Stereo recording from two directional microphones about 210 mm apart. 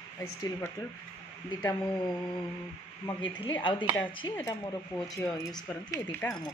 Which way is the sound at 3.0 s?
20° left (ahead or behind).